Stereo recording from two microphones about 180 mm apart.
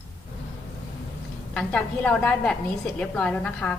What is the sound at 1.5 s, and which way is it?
A woman's voice, 5° left (ahead or behind).